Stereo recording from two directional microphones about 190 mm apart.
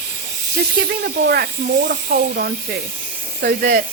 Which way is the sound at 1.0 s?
55° right (ahead or behind).